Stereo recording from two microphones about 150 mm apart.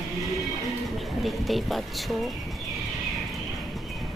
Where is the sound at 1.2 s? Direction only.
Centre (ahead or behind).